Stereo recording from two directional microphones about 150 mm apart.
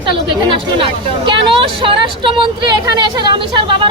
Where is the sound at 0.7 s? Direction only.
35° right (ahead or behind).